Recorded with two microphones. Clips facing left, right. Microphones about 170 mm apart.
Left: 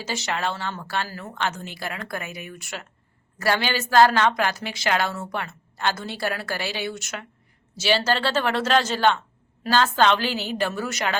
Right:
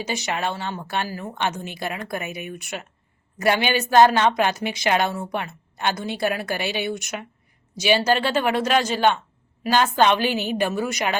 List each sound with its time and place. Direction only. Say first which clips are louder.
0.0 s a woman's voice: right 2 dB; 15° right (ahead or behind)